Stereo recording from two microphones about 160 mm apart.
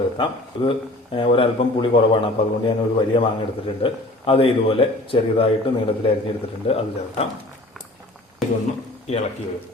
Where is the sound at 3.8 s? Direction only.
35° left (ahead or behind).